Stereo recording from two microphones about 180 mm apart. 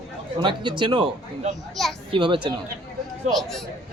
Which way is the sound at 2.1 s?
25° right (ahead or behind).